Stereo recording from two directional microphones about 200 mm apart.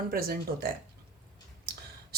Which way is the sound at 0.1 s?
50° right (ahead or behind).